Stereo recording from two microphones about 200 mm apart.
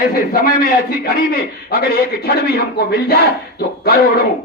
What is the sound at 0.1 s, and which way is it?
A man's voice, 45° left (ahead or behind).